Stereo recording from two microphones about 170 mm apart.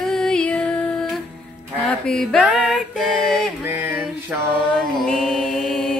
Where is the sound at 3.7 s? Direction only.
10° right (ahead or behind).